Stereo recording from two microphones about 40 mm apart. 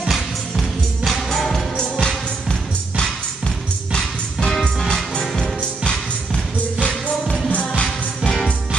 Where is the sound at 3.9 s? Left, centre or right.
Centre.